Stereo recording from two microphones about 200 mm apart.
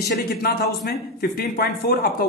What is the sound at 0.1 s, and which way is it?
Speech, 45° left (ahead or behind).